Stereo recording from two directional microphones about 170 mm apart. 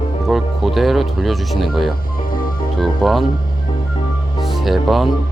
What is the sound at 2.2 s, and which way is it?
Music, 55° left (ahead or behind).